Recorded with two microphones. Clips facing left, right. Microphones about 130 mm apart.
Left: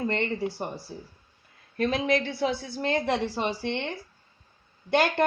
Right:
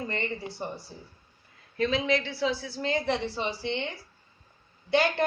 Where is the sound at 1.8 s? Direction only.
55° left (ahead or behind).